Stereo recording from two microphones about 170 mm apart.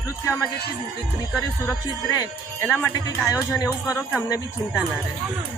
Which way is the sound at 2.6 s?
10° left (ahead or behind).